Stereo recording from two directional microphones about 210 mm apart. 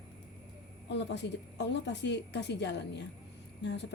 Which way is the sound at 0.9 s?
55° left (ahead or behind).